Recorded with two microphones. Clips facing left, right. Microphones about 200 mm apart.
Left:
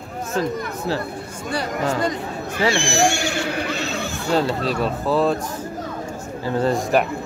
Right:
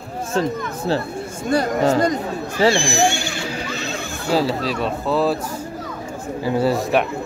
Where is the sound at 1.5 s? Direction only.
45° right (ahead or behind).